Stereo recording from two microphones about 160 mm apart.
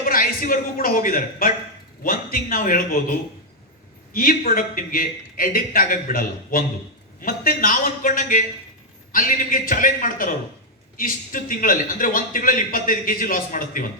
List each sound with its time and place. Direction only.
0.0 s a man's voice: 60° left (ahead or behind)
4.1 s a man's voice: 65° left (ahead or behind)